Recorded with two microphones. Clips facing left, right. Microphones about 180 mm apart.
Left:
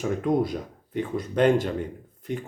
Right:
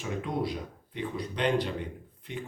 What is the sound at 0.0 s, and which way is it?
Speech, 45° left (ahead or behind).